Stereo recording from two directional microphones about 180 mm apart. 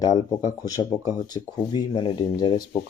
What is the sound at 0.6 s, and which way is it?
Speech, 20° left (ahead or behind).